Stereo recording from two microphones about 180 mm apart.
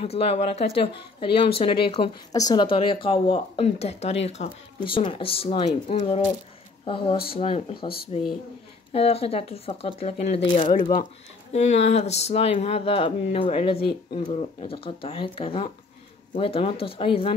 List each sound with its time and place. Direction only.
0.0 s speech: 35° left (ahead or behind)
7.3 s speech: 30° left (ahead or behind)